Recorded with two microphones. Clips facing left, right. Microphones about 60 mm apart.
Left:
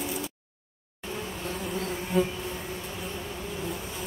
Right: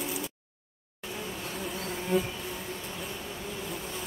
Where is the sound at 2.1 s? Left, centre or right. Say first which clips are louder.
Left 2 dB; centre.